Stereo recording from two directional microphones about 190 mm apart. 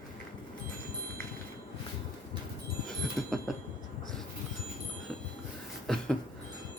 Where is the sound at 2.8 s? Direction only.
Centre (ahead or behind).